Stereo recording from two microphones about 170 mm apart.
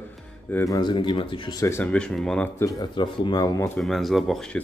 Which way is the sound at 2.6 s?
20° left (ahead or behind).